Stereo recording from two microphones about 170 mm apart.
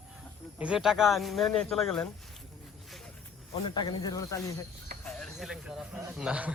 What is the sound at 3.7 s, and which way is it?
Speech, 25° left (ahead or behind).